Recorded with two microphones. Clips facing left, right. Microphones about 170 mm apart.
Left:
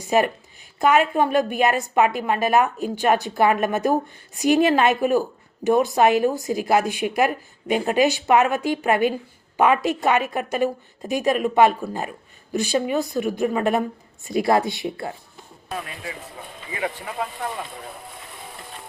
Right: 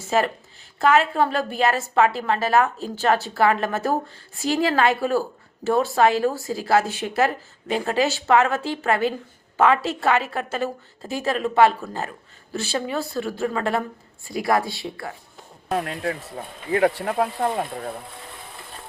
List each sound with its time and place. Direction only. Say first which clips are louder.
0.0 s a woman's voice: left 2 dB; 15° left (ahead or behind)
15.7 s speech: right 7 dB; 55° right (ahead or behind)